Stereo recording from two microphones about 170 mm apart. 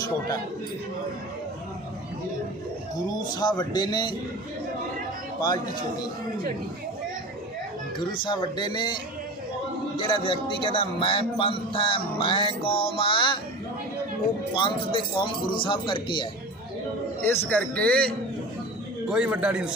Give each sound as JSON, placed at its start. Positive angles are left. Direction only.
{"t": 3.1, "sound": "speech", "side_deg": 25}
{"t": 7.9, "sound": "speech", "side_deg": 25}
{"t": 10.0, "sound": "a man's voice", "side_deg": 30}
{"t": 14.5, "sound": "speech", "side_deg": 30}
{"t": 17.2, "sound": "a man's voice", "side_deg": 15}
{"t": 19.1, "sound": "a man's voice", "side_deg": -5}